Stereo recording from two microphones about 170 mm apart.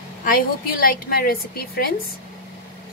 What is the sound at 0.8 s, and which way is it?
A woman's voice, 60° left (ahead or behind).